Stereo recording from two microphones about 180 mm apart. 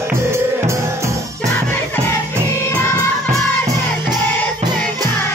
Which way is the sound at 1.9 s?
15° left (ahead or behind).